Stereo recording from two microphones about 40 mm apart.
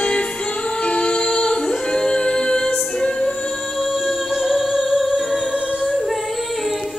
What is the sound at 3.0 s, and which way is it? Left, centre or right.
Music, left.